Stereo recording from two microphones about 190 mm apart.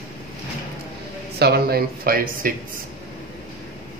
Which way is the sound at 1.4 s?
55° right (ahead or behind).